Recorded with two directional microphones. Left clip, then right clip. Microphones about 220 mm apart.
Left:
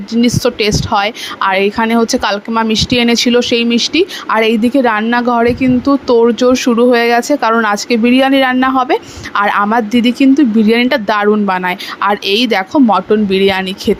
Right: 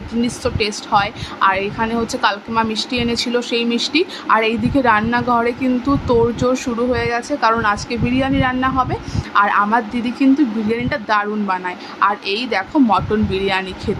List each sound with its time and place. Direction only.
0.1 s speech: 30° left (ahead or behind)